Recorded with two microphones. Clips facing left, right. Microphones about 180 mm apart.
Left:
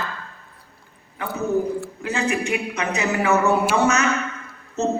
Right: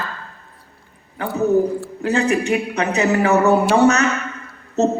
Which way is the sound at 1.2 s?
35° right (ahead or behind).